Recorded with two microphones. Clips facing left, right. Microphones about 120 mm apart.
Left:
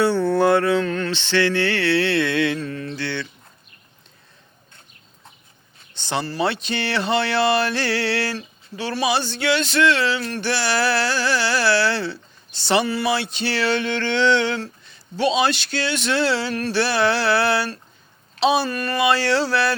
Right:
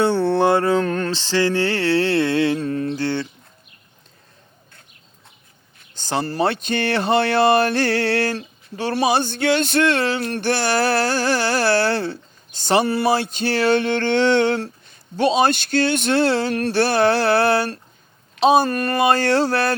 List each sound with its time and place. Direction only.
0.0 s mantra: 30° right (ahead or behind)
5.9 s speech: 40° right (ahead or behind)